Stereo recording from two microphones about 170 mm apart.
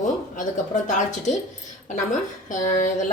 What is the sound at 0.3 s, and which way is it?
Speech, 45° left (ahead or behind).